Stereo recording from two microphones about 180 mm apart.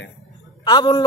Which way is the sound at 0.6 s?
25° left (ahead or behind).